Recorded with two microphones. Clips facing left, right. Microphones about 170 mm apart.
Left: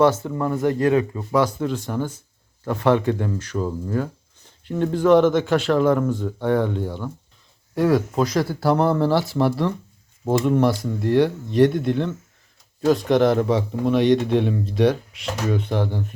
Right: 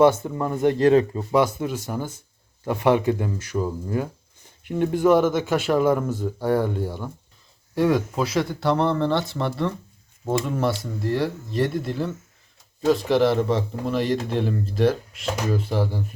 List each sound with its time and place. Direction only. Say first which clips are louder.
0.0 s speech: even; 15° right (ahead or behind)
0.6 s speech: right 3 dB; 25° right (ahead or behind)
1.5 s speech: left 3 dB; 10° right (ahead or behind)
7.8 s a man's voice: left 2 dB; centre (ahead or behind)